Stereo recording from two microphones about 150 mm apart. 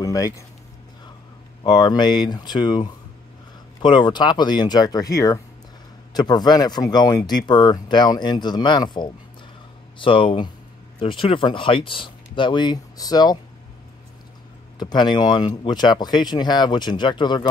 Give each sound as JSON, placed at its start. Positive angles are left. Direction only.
{"t": 0.0, "sound": "a sound", "side_deg": 20}
{"t": 1.6, "sound": "speech", "side_deg": 30}
{"t": 14.8, "sound": "speech", "side_deg": 30}